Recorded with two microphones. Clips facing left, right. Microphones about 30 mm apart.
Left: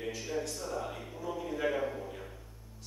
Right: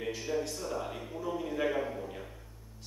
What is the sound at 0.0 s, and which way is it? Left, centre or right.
Speech, centre.